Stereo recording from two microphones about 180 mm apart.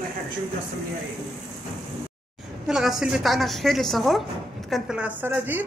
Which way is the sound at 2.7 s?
Centre (ahead or behind).